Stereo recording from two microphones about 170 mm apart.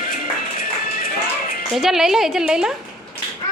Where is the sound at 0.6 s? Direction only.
55° left (ahead or behind).